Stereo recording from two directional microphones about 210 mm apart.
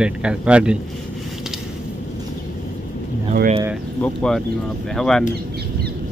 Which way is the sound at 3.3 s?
40° right (ahead or behind).